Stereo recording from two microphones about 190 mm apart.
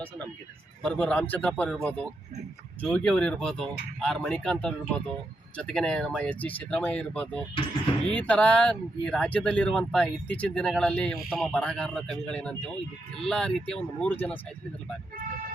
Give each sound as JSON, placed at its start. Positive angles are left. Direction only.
{"t": 0.8, "sound": "speech", "side_deg": 5}